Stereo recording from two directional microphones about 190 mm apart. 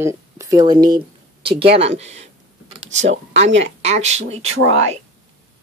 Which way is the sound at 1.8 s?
35° right (ahead or behind).